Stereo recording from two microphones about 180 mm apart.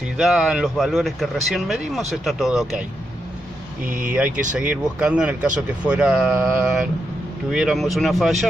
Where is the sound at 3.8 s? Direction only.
50° right (ahead or behind).